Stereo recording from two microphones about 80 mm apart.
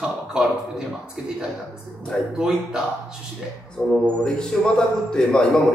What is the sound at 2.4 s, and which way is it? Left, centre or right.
Speech, centre.